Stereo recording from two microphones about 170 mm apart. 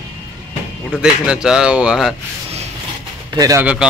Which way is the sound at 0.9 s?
5° right (ahead or behind).